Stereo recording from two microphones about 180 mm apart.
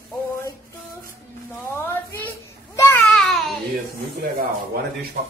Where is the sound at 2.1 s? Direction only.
15° left (ahead or behind).